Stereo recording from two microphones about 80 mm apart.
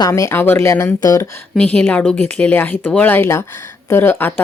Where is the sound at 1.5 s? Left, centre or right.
Centre.